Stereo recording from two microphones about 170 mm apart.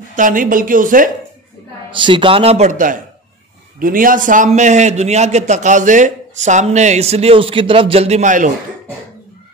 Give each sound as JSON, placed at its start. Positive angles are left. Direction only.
{"t": 0.1, "sound": "a man's voice", "side_deg": -50}
{"t": 1.9, "sound": "a man's voice", "side_deg": -30}